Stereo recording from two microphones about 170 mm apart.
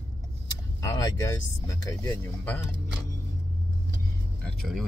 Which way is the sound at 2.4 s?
10° left (ahead or behind).